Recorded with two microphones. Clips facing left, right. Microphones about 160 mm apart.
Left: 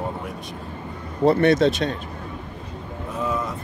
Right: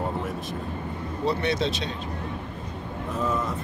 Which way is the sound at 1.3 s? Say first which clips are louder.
Left 9 dB; 50° left (ahead or behind).